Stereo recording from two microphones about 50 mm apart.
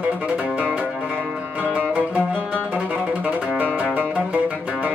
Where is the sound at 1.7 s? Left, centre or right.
Right.